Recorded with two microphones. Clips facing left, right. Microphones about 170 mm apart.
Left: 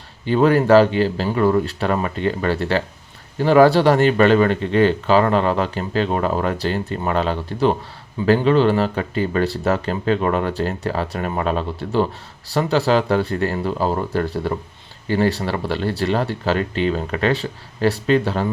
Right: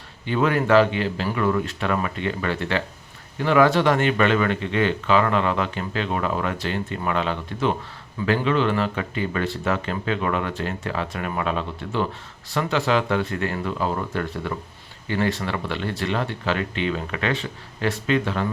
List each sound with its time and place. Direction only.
0.3 s speech: 35° left (ahead or behind)